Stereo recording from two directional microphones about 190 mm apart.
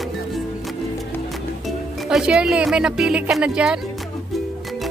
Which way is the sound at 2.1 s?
5° right (ahead or behind).